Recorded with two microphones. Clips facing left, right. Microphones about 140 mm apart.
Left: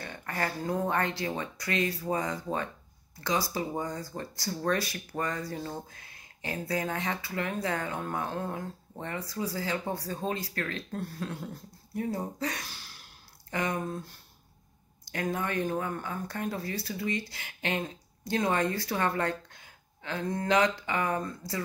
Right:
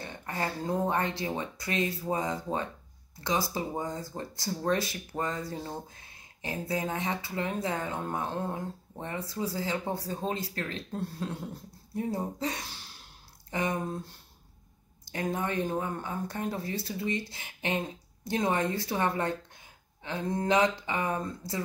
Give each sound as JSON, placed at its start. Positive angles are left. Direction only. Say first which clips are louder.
{"t": 0.0, "sound": "a woman's voice", "louder": "even", "side_deg": -20}